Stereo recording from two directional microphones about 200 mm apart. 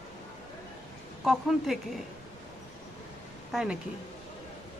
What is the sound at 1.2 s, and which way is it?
Speech, centre (ahead or behind).